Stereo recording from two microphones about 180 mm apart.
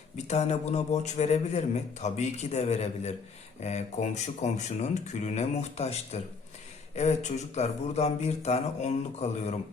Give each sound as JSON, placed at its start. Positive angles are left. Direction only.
{"t": 0.3, "sound": "a man's voice", "side_deg": 40}